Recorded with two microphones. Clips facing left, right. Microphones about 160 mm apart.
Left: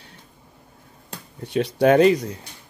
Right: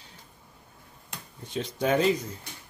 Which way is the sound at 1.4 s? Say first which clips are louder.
Left 10 dB; 70° left (ahead or behind).